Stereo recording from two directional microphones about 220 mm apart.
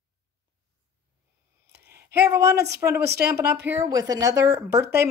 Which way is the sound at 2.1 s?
10° right (ahead or behind).